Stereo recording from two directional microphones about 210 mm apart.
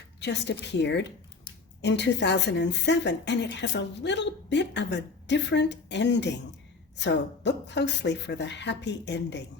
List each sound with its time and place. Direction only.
0.2 s a woman's voice: 55° left (ahead or behind)